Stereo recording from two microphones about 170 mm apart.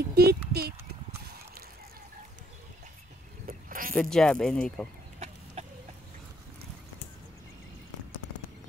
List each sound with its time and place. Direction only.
0.1 s clip-clop: 70° right (ahead or behind)
3.4 s a sound: 55° right (ahead or behind)
3.9 s speech: 5° left (ahead or behind)
5.2 s chicken: 40° right (ahead or behind)